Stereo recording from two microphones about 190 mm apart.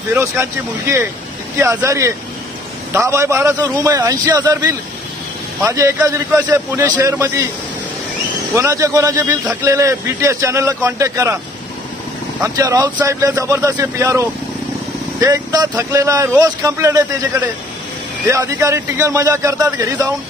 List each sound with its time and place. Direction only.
0.1 s a man's voice: 15° right (ahead or behind)
8.5 s a man's voice: 15° right (ahead or behind)
12.4 s a man's voice: 15° right (ahead or behind)